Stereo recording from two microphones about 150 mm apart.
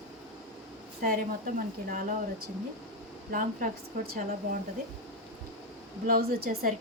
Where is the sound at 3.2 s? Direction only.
70° right (ahead or behind).